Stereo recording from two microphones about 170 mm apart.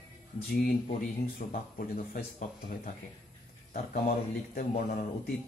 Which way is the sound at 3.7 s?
55° left (ahead or behind).